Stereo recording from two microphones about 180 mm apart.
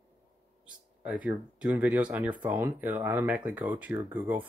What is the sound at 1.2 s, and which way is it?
Speech, 5° right (ahead or behind).